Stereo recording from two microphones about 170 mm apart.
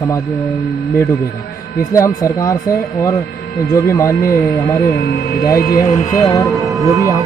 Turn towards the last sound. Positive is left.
turn(degrees=-20)  # may be behind; listen again after turning